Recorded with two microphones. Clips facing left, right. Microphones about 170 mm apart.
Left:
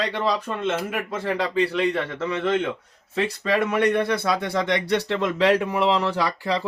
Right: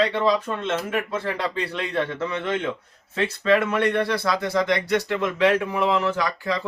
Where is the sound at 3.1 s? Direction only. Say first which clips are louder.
Right 3 dB; 5° left (ahead or behind).